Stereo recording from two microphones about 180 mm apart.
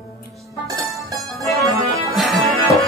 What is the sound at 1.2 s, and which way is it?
Music, centre (ahead or behind).